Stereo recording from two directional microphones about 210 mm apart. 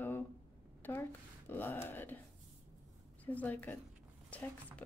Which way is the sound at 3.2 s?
10° left (ahead or behind).